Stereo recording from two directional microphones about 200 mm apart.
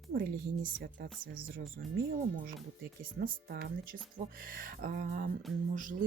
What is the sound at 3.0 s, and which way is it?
A woman's voice, 50° right (ahead or behind).